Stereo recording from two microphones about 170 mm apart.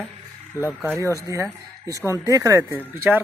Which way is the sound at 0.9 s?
20° right (ahead or behind).